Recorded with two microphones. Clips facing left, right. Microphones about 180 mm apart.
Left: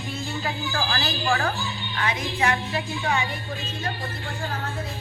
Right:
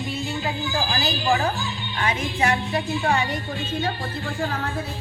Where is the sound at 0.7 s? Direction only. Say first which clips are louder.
Right 2 dB; 15° right (ahead or behind).